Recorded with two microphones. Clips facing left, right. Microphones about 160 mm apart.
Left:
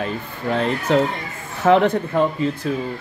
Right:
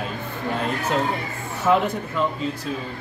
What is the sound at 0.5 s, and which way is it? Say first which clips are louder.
Speech: left 6 dB; 70° left (ahead or behind).